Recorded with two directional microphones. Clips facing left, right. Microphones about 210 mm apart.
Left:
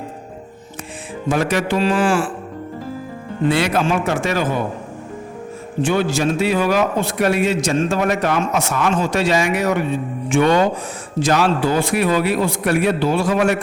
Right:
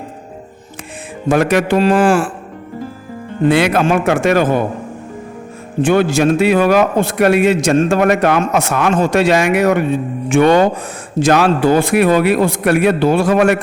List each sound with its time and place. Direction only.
1.3 s a man's voice: 60° right (ahead or behind)
3.5 s a man's voice: 60° right (ahead or behind)
5.8 s a man's voice: 55° right (ahead or behind)